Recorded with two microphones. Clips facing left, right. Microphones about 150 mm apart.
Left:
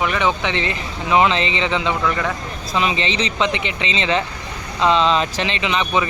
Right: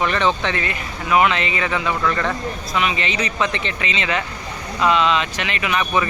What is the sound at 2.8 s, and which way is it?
Speech, 30° left (ahead or behind).